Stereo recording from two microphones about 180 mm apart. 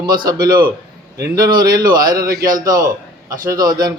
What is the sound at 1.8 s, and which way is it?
Speech, 55° right (ahead or behind).